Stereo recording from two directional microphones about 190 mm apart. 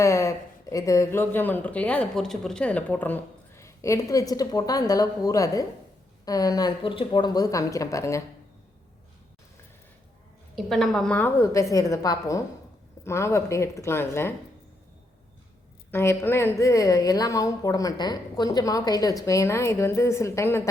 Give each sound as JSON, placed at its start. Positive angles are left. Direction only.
{"t": 0.0, "sound": "a woman's voice", "side_deg": 15}
{"t": 10.5, "sound": "speech", "side_deg": 0}
{"t": 15.9, "sound": "a woman's voice", "side_deg": 10}